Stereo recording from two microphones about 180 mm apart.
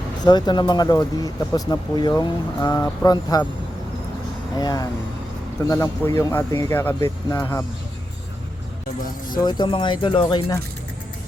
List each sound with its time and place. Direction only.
0.3 s speech: 25° left (ahead or behind)
4.5 s speech: 20° left (ahead or behind)
9.0 s speech: 50° left (ahead or behind)
9.4 s speech: 25° left (ahead or behind)